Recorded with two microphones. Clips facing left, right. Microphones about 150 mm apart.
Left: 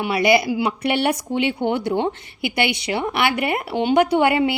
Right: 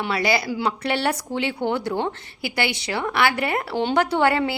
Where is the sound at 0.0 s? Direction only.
20° left (ahead or behind).